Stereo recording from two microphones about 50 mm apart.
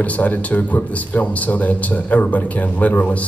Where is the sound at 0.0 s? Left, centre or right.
Left.